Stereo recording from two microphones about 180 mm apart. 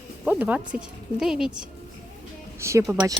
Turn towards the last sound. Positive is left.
turn(degrees=-15)  # may be behind; listen again after turning